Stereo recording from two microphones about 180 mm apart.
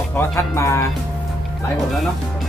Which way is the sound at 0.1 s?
10° left (ahead or behind).